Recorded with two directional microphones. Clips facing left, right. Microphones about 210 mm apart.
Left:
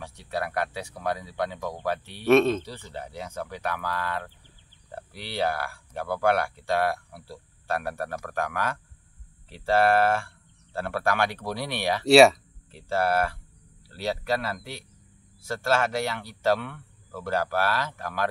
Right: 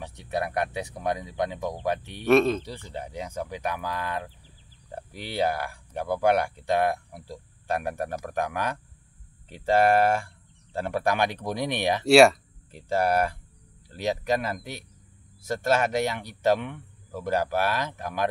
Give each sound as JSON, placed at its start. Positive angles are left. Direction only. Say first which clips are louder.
{"t": 0.0, "sound": "speech", "louder": "right 2 dB", "side_deg": -20}
{"t": 2.2, "sound": "speech", "louder": "left 1 dB", "side_deg": 0}
{"t": 2.6, "sound": "speech", "louder": "right 1 dB", "side_deg": -15}
{"t": 12.1, "sound": "speech", "louder": "left 1 dB", "side_deg": 0}
{"t": 12.7, "sound": "speech", "louder": "right 1 dB", "side_deg": -15}